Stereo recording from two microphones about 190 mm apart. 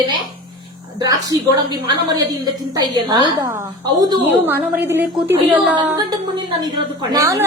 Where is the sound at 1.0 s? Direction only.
20° right (ahead or behind).